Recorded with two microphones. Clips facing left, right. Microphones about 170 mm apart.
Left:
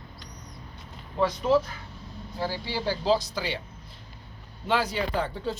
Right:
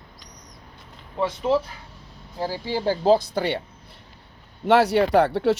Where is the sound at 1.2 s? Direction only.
25° right (ahead or behind).